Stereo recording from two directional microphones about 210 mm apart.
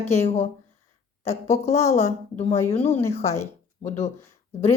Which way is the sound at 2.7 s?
25° left (ahead or behind).